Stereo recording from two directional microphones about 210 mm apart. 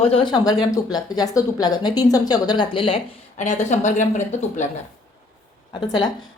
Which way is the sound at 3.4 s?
35° left (ahead or behind).